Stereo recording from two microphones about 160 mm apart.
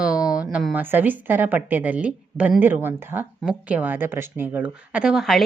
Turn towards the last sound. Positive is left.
turn(degrees=0)  # may be behind; listen again after turning